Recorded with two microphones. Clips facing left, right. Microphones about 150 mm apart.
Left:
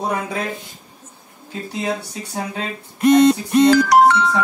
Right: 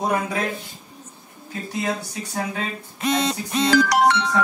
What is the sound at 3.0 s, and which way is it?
Music, 60° left (ahead or behind).